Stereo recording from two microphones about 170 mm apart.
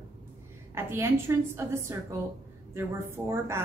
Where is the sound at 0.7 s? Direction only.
15° right (ahead or behind).